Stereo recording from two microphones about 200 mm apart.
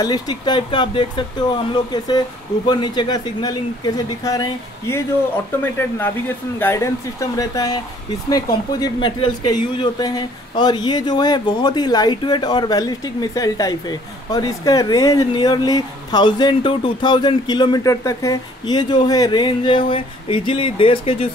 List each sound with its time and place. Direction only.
0.0 s speech: 20° left (ahead or behind)